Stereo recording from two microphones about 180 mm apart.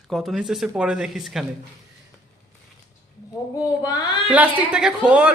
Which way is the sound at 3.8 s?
20° left (ahead or behind).